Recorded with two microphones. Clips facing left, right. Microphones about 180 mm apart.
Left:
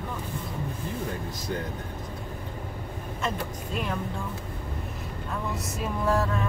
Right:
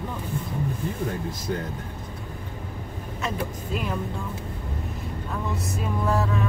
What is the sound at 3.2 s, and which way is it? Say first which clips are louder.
Music: right 2 dB; centre (ahead or behind).